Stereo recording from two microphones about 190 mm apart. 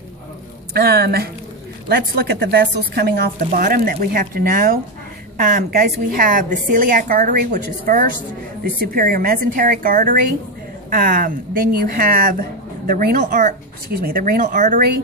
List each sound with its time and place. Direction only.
0.7 s speech: 55° right (ahead or behind)